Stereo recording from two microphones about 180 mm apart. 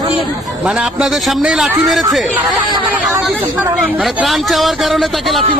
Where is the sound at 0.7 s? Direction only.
5° right (ahead or behind).